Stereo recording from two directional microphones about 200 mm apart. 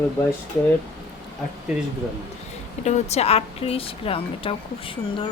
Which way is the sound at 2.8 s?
35° left (ahead or behind).